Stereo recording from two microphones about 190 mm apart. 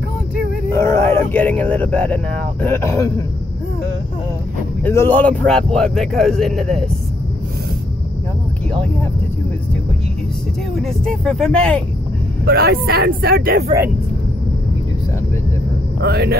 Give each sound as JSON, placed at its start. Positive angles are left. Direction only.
{"t": 0.7, "sound": "speech", "side_deg": 15}
{"t": 4.8, "sound": "a man's voice", "side_deg": 10}
{"t": 10.8, "sound": "a man's voice", "side_deg": 0}
{"t": 12.4, "sound": "speech", "side_deg": -55}
{"t": 16.0, "sound": "speech", "side_deg": -55}